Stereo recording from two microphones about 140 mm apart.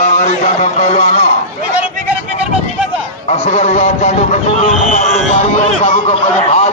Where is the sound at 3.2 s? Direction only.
45° left (ahead or behind).